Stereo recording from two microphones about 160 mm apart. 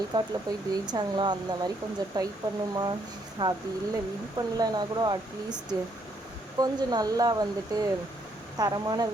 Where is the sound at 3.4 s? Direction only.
25° right (ahead or behind).